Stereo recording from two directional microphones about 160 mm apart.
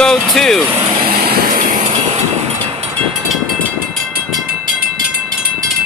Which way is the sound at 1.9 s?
45° right (ahead or behind).